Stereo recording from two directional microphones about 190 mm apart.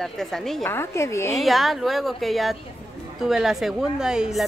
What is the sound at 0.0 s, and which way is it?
Speech, centre (ahead or behind).